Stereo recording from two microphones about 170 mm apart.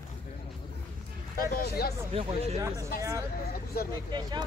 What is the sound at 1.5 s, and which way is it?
Speech, 65° left (ahead or behind).